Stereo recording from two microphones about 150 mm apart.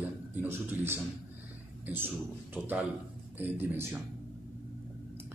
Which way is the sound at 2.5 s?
10° right (ahead or behind).